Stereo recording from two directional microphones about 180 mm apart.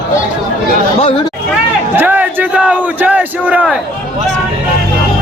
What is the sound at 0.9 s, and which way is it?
Speech, 30° left (ahead or behind).